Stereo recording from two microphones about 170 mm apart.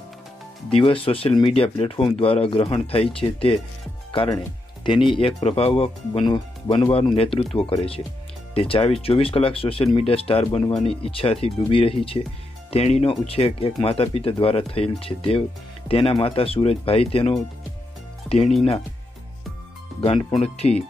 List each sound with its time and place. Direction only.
0.7 s speech: 35° left (ahead or behind)
20.0 s speech: 30° left (ahead or behind)